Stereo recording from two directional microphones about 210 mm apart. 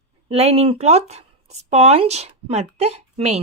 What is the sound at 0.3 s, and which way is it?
Speech, 30° right (ahead or behind).